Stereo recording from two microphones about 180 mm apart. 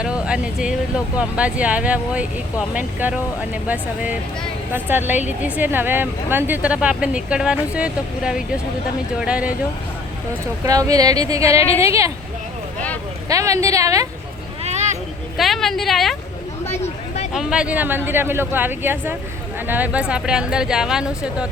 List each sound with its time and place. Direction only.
0.0 s speech: 5° right (ahead or behind)
10.6 s speech: 20° right (ahead or behind)
13.2 s speech: 20° right (ahead or behind)
14.6 s a sound: 35° right (ahead or behind)
15.4 s speech: centre (ahead or behind)
16.6 s a sound: 35° left (ahead or behind)
17.3 s speech: 5° right (ahead or behind)